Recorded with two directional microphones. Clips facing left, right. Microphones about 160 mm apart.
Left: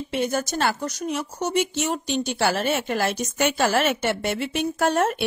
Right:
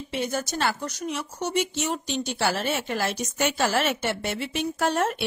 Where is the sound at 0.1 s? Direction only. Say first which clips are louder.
Left 3 dB; 55° left (ahead or behind).